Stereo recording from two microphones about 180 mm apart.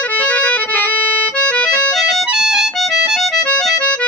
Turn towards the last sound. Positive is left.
turn(degrees=5)  # may be behind; listen again after turning